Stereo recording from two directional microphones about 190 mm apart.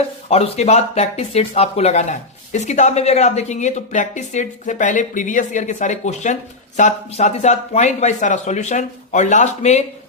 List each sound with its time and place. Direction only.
0.3 s speech: 30° left (ahead or behind)